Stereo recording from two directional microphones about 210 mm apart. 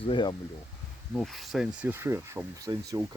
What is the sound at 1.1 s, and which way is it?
Speech, centre (ahead or behind).